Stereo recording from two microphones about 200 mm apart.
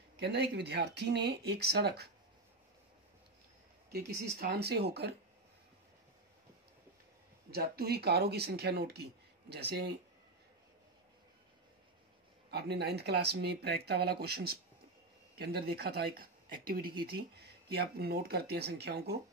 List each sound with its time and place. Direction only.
0.2 s speech: 55° right (ahead or behind)
3.9 s speech: 50° right (ahead or behind)
7.5 s speech: 50° right (ahead or behind)
12.4 s speech: 55° right (ahead or behind)